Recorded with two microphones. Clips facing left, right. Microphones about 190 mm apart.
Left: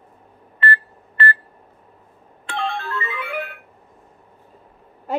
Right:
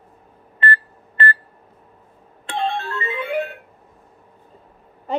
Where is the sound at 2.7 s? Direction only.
25° right (ahead or behind).